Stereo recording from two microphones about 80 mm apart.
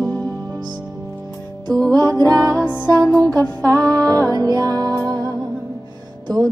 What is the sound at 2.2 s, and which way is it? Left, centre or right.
Music, right.